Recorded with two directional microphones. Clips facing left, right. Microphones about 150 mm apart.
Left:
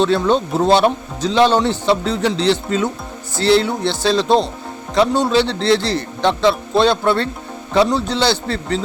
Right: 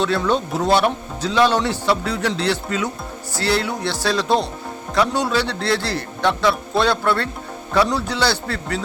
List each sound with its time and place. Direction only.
0.0 s speech: 25° left (ahead or behind)